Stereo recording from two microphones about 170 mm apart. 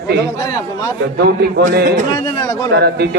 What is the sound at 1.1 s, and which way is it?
Speech, 75° right (ahead or behind).